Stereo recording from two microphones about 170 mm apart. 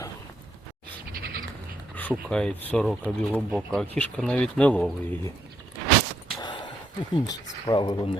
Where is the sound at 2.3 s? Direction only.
5° left (ahead or behind).